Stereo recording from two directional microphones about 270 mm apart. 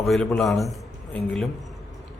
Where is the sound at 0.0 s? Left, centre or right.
Centre.